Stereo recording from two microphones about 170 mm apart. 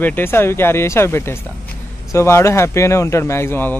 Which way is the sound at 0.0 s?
10° left (ahead or behind).